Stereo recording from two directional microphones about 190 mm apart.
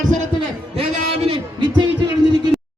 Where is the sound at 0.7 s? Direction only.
30° right (ahead or behind).